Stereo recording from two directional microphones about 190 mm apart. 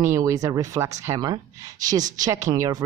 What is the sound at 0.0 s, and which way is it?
Speech, 15° right (ahead or behind).